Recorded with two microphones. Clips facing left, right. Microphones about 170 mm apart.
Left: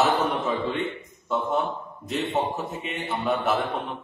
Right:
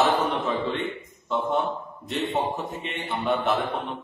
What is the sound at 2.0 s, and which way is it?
A man's voice, centre (ahead or behind).